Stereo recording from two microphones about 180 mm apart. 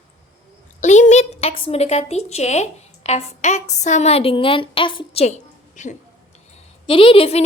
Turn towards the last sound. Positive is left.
turn(degrees=30)  # may be behind; listen again after turning